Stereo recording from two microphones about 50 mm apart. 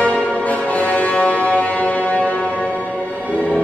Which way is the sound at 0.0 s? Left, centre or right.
Left.